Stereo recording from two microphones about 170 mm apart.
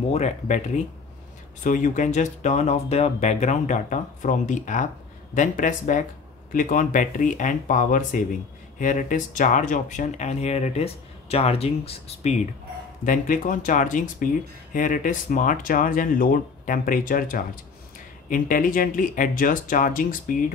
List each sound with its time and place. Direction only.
0.1 s speech: 40° left (ahead or behind)
1.6 s speech: 50° left (ahead or behind)
13.0 s speech: 50° left (ahead or behind)